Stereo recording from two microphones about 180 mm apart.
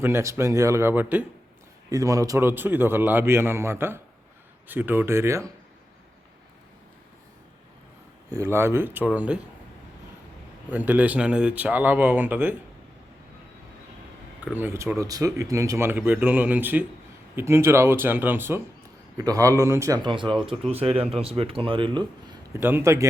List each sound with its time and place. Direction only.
0.0 s speech: 15° right (ahead or behind)
8.3 s speech: 15° right (ahead or behind)
10.7 s speech: 10° right (ahead or behind)
14.4 s speech: 10° right (ahead or behind)
20.2 s speech: centre (ahead or behind)
20.5 s speech: 35° right (ahead or behind)
22.6 s speech: 15° right (ahead or behind)